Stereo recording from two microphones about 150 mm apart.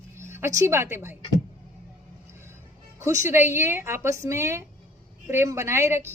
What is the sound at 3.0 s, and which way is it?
Speech, 20° right (ahead or behind).